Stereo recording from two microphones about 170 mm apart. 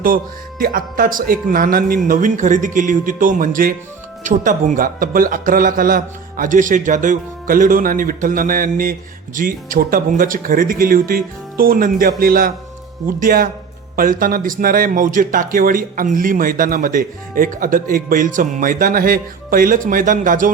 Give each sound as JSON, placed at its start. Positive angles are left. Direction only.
{"t": 0.6, "sound": "speech", "side_deg": -55}